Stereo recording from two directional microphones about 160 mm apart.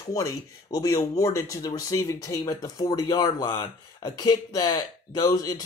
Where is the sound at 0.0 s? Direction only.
20° left (ahead or behind).